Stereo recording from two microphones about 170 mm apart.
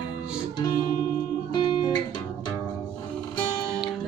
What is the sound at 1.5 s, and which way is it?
Music, 25° left (ahead or behind).